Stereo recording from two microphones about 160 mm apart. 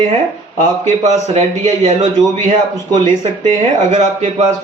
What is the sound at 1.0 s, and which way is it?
Speech, 45° right (ahead or behind).